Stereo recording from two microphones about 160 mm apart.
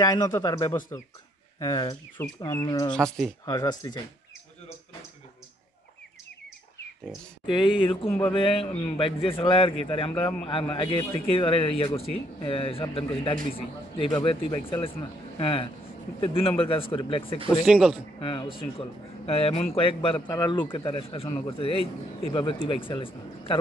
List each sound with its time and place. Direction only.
0.0 s speech: 25° left (ahead or behind)
2.9 s speech: 5° left (ahead or behind)
3.4 s speech: 25° left (ahead or behind)
7.1 s a man's voice: 30° left (ahead or behind)
17.6 s speech: 5° right (ahead or behind)
18.2 s a man's voice: 30° left (ahead or behind)